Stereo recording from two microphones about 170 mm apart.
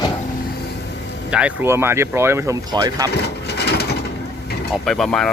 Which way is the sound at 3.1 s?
75° left (ahead or behind).